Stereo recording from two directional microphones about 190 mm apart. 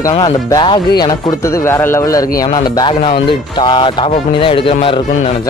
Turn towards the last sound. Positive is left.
turn(degrees=30)  # may be behind; listen again after turning